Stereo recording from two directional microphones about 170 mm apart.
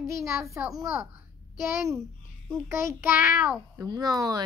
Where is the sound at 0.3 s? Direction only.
15° right (ahead or behind).